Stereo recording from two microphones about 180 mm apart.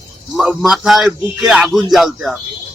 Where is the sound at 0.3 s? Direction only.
5° right (ahead or behind).